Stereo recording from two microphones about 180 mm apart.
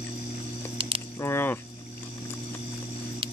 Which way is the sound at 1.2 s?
10° left (ahead or behind).